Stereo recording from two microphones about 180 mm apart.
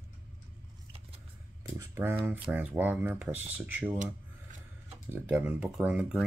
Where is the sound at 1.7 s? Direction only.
15° right (ahead or behind).